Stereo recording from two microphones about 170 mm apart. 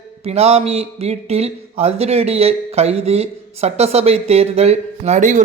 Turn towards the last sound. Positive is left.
turn(degrees=-45)  # may be behind; listen again after turning